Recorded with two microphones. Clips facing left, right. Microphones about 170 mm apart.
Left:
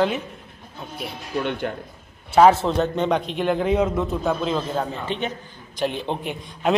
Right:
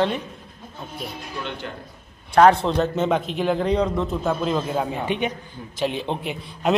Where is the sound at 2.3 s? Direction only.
5° left (ahead or behind); by 5.3 s 15° right (ahead or behind).